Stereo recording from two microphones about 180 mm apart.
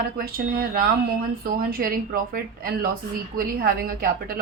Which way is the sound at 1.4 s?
55° right (ahead or behind).